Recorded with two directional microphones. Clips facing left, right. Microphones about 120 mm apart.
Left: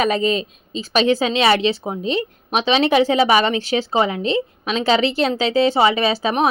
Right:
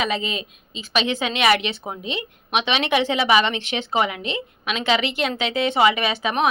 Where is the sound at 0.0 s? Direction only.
45° left (ahead or behind); by 2.0 s 25° left (ahead or behind).